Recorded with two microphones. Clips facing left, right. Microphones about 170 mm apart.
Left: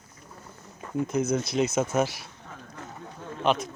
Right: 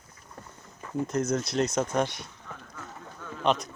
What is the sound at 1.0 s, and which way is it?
Speech, centre (ahead or behind).